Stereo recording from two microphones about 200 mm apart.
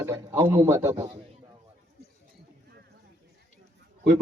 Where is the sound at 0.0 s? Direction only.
15° right (ahead or behind).